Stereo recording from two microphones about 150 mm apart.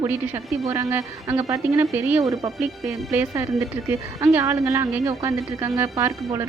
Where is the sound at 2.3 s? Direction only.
25° right (ahead or behind).